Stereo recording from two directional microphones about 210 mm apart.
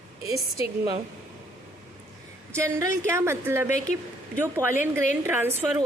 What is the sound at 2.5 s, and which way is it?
A woman's voice, 15° right (ahead or behind).